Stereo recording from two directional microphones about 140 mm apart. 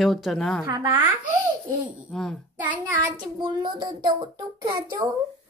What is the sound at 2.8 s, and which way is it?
A child's voice, 30° right (ahead or behind).